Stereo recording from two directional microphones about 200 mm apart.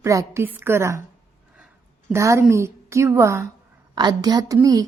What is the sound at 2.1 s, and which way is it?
A woman's voice, 15° right (ahead or behind).